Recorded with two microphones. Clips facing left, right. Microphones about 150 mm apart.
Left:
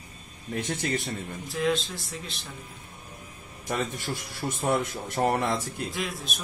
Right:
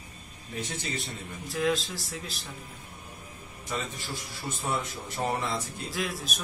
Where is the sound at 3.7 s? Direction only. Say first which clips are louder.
Left 5 dB; 60° left (ahead or behind).